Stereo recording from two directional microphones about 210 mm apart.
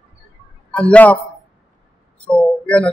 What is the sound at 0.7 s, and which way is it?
Speech, 5° left (ahead or behind).